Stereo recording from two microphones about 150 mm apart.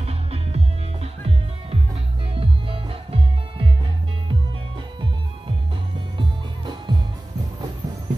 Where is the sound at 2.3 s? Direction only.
40° right (ahead or behind).